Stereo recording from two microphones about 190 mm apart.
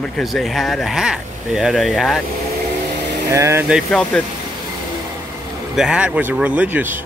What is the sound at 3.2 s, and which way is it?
Speech, 15° right (ahead or behind).